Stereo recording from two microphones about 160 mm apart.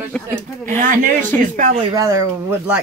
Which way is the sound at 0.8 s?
55° right (ahead or behind).